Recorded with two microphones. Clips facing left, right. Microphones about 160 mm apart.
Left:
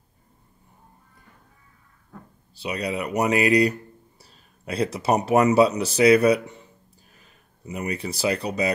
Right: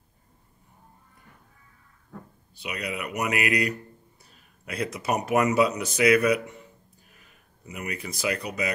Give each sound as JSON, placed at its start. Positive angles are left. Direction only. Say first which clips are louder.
{"t": 2.5, "sound": "speech", "louder": "left 6 dB", "side_deg": 30}
{"t": 7.6, "sound": "speech", "louder": "left 6 dB", "side_deg": 30}